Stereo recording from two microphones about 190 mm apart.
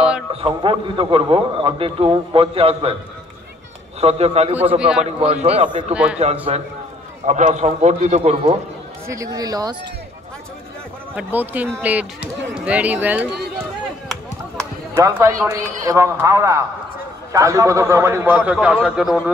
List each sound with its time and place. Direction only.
0.3 s a man's voice: 30° right (ahead or behind)
4.0 s a man's voice: 35° right (ahead or behind)
4.7 s a man's voice: 5° right (ahead or behind)
5.2 s a man's voice: 35° right (ahead or behind)
9.1 s a man's voice: 20° right (ahead or behind)
11.1 s speech: 10° right (ahead or behind)
15.0 s speech: 15° right (ahead or behind)